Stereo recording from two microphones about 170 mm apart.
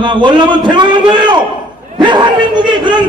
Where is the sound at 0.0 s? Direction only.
25° right (ahead or behind).